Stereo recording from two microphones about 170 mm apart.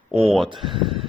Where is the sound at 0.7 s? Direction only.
30° right (ahead or behind).